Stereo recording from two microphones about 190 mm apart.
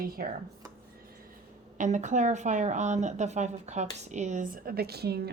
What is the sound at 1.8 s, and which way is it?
Speech, 40° right (ahead or behind).